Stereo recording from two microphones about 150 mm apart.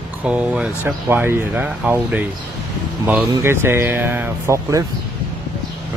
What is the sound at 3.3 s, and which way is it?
Speech, 15° right (ahead or behind).